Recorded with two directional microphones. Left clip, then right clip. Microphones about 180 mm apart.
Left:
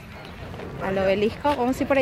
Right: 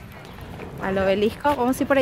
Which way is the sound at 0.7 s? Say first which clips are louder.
Right 1 dB; 20° right (ahead or behind).